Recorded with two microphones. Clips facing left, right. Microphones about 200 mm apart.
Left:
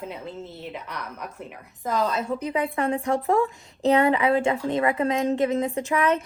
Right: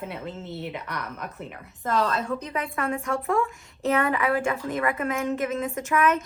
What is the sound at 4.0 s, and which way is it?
A woman's voice, 25° left (ahead or behind).